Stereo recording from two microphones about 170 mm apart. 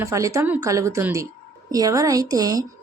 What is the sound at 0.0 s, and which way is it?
Speech, 20° right (ahead or behind).